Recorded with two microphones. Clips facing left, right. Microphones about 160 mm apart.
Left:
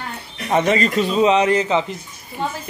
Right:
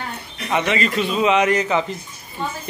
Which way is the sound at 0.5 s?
40° left (ahead or behind).